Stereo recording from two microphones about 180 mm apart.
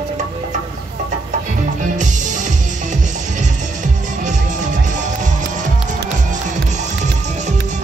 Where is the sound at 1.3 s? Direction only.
45° right (ahead or behind).